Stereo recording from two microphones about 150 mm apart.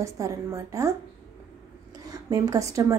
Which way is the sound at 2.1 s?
25° right (ahead or behind).